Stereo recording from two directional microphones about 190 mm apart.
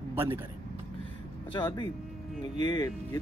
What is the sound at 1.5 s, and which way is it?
Speech, 25° left (ahead or behind).